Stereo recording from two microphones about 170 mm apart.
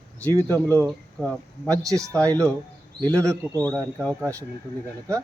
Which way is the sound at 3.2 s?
15° right (ahead or behind).